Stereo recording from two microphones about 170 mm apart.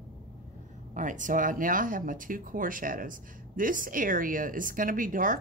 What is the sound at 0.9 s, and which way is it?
Speech, 50° right (ahead or behind).